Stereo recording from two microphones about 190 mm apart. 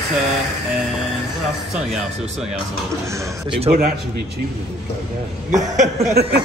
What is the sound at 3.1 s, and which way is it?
Speech, 15° right (ahead or behind).